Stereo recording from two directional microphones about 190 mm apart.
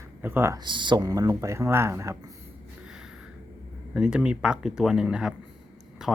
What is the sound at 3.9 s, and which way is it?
Speech, 5° right (ahead or behind).